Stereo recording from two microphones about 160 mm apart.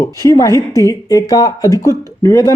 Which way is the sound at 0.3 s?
20° left (ahead or behind).